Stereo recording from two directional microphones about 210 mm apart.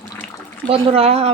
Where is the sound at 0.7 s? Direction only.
25° right (ahead or behind).